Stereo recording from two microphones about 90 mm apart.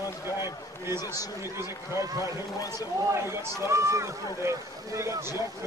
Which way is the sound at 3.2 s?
30° right (ahead or behind).